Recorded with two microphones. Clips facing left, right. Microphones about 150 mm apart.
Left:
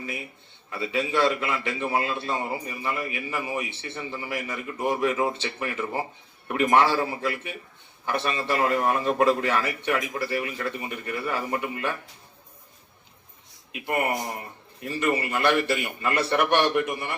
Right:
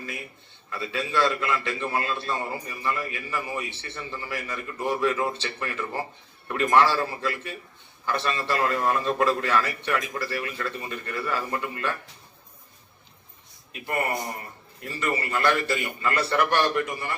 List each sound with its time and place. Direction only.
0.7 s a man's voice: 20° left (ahead or behind)
13.7 s a man's voice: 20° left (ahead or behind)